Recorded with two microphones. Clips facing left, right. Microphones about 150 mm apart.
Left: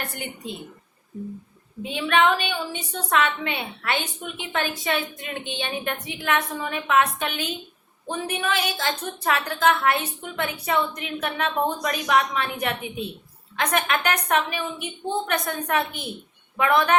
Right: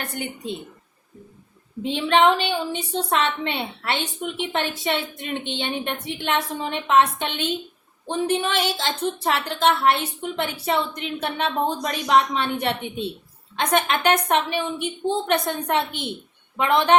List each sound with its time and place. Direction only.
1.8 s a woman's voice: 25° right (ahead or behind)